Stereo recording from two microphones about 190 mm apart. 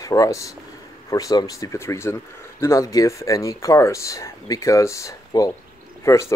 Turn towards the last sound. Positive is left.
turn(degrees=15)  # may be behind; listen again after turning